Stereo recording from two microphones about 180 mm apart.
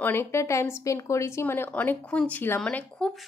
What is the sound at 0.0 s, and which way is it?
Speech, 15° left (ahead or behind).